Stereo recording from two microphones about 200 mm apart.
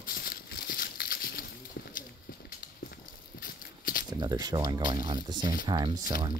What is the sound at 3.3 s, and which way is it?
Horse, 45° left (ahead or behind).